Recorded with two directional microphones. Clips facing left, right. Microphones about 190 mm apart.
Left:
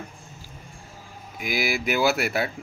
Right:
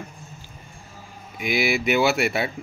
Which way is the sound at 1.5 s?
Centre (ahead or behind).